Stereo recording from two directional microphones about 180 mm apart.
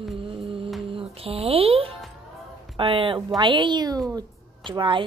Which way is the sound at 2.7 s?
30° right (ahead or behind).